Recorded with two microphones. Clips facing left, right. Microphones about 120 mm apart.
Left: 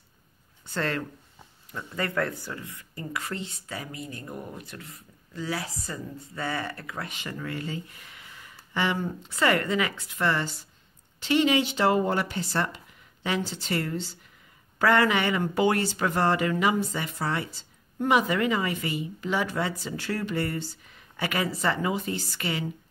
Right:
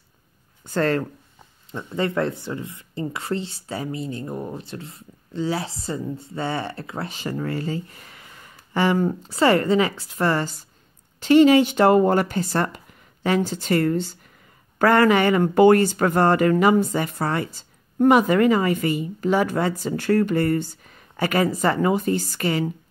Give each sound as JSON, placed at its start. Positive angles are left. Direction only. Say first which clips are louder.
{"t": 0.7, "sound": "speech", "louder": "right 8 dB", "side_deg": -45}
{"t": 1.7, "sound": "speech", "louder": "right 7 dB", "side_deg": -25}